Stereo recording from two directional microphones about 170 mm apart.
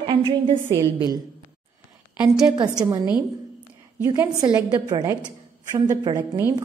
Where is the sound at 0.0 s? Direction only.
30° right (ahead or behind).